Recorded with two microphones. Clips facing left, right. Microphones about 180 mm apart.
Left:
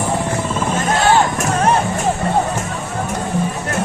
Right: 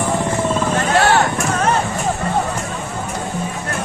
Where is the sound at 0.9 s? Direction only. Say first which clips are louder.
Even; 65° right (ahead or behind).